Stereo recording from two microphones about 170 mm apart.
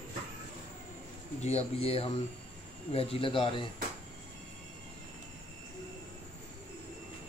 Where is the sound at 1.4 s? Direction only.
40° left (ahead or behind).